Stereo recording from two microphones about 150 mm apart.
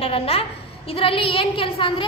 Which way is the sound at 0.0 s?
40° left (ahead or behind).